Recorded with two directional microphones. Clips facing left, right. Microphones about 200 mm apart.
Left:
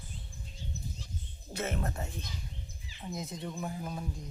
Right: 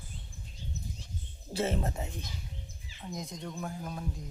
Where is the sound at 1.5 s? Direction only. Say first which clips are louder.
Right 4 dB; 30° right (ahead or behind).